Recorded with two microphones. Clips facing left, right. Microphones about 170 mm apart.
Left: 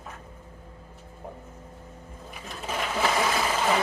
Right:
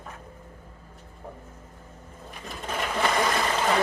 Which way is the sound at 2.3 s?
5° left (ahead or behind).